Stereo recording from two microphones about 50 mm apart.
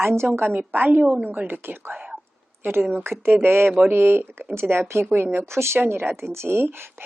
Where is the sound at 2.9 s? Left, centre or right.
Right.